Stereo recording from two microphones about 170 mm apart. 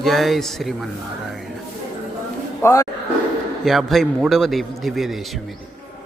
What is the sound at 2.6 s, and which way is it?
Speech, 15° left (ahead or behind).